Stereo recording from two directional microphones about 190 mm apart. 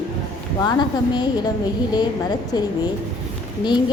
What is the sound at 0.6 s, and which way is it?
Speech, 20° left (ahead or behind).